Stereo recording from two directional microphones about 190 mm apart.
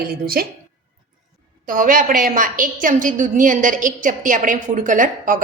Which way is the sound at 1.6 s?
45° right (ahead or behind).